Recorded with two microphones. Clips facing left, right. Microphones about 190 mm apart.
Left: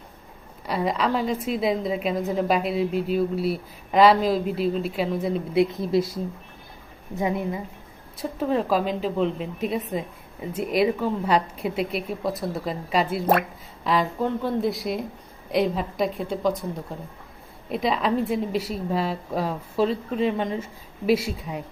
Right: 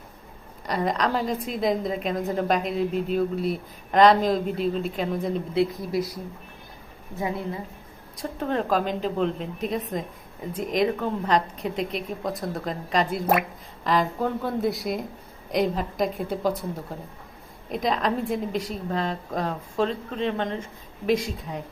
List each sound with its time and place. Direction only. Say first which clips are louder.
0.7 s a woman's voice: left 1 dB; 5° left (ahead or behind)
5.5 s speech: left 4 dB; 25° left (ahead or behind)
7.2 s speech: left 4 dB; 20° left (ahead or behind)
8.2 s a woman's voice: left 3 dB; 5° left (ahead or behind)
17.7 s a woman's voice: left 1 dB; 5° left (ahead or behind)